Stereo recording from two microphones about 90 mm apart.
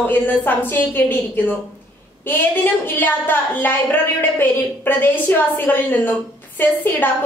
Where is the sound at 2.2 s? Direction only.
25° left (ahead or behind).